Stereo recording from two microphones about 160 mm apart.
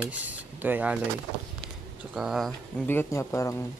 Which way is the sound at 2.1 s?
Centre (ahead or behind).